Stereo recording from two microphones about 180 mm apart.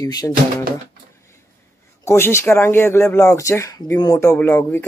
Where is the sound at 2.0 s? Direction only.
15° left (ahead or behind).